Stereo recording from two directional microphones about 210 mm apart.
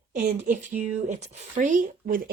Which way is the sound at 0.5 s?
35° right (ahead or behind).